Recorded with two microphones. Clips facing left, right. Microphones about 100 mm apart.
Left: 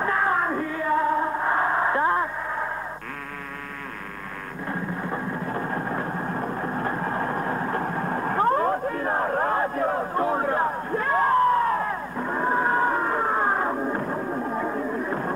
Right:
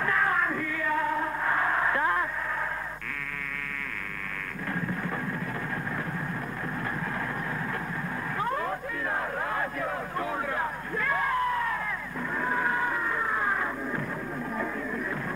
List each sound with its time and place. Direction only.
0.0 s music: 30° left (ahead or behind)
5.0 s vehicle: 25° left (ahead or behind)